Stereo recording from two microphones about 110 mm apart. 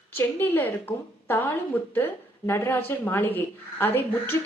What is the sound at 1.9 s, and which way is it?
Speech, 20° left (ahead or behind).